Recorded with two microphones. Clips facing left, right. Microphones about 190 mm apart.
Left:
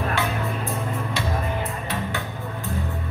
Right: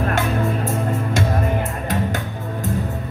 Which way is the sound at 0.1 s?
45° right (ahead or behind).